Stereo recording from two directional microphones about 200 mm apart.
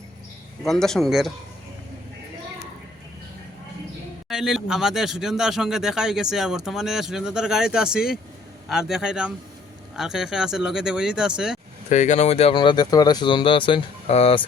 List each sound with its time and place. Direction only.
0.6 s a man's voice: centre (ahead or behind)
4.3 s a man's voice: centre (ahead or behind)
11.9 s speech: 35° left (ahead or behind)